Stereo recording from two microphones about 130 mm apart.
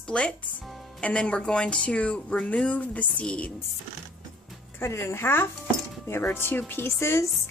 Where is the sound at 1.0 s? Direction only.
10° left (ahead or behind).